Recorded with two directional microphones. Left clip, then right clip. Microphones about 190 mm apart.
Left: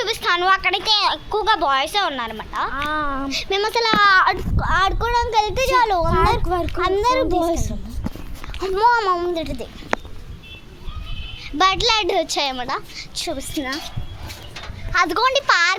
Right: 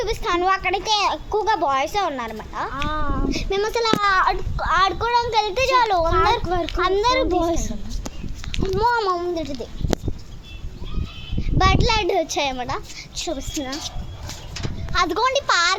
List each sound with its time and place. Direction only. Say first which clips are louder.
0.0 s speech: left 2 dB; 5° right (ahead or behind)
2.7 s speech: left 2 dB; 20° left (ahead or behind)
3.2 s speech: left 2 dB; 5° right (ahead or behind)
6.4 s speech: left 1 dB; 25° left (ahead or behind)
6.7 s a child's voice: even; centre (ahead or behind)
11.3 s a child's voice: left 2 dB; 5° left (ahead or behind)
14.9 s a child's voice: left 3 dB; 10° left (ahead or behind)
15.2 s speech: left 2 dB; 25° left (ahead or behind)